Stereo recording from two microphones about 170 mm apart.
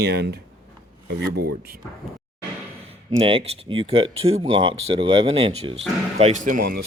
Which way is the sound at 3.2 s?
35° right (ahead or behind).